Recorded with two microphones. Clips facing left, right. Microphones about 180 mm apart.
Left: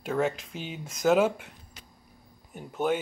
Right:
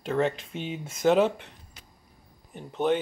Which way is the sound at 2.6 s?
5° left (ahead or behind).